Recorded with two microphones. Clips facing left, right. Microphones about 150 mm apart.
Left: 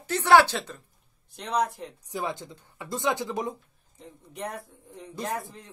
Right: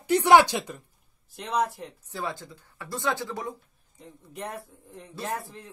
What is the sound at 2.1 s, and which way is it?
Speech, 20° left (ahead or behind).